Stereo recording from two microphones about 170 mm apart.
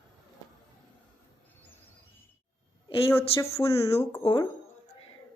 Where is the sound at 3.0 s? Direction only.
15° left (ahead or behind).